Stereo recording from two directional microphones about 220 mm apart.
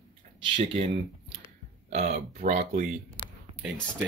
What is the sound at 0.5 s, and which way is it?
Speech, 25° right (ahead or behind).